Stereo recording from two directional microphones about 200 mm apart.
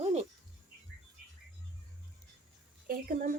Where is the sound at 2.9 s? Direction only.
45° right (ahead or behind).